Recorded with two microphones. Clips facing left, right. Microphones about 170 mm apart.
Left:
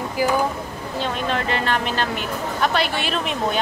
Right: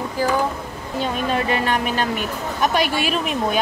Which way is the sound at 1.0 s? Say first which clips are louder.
Right 3 dB; 15° right (ahead or behind).